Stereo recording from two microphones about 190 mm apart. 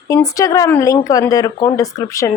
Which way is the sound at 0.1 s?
15° left (ahead or behind).